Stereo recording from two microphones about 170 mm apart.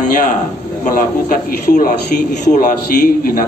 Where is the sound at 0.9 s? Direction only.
55° left (ahead or behind).